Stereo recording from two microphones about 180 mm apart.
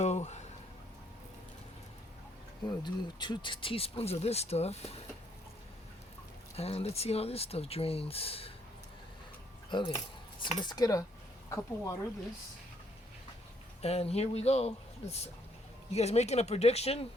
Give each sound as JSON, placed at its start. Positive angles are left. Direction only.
{"t": 0.0, "sound": "a sound", "side_deg": 40}
{"t": 2.6, "sound": "speech", "side_deg": 25}
{"t": 6.6, "sound": "speech", "side_deg": 35}
{"t": 9.6, "sound": "speech", "side_deg": 25}
{"t": 13.8, "sound": "speech", "side_deg": 35}